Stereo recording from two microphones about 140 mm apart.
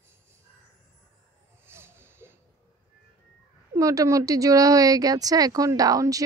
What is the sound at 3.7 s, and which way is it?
Speech, 25° right (ahead or behind).